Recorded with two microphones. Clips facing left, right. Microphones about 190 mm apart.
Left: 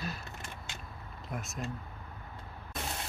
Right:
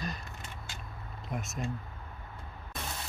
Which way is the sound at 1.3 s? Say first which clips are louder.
Right 2 dB; centre (ahead or behind).